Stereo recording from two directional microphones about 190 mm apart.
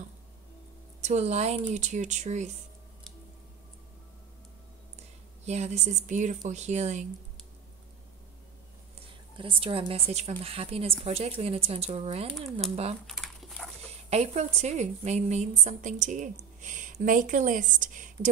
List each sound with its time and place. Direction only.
1.0 s a woman's voice: 35° right (ahead or behind)
5.4 s a woman's voice: 35° right (ahead or behind)
9.4 s a woman's voice: 25° right (ahead or behind)
13.0 s a sound: centre (ahead or behind)
14.1 s a woman's voice: 35° right (ahead or behind)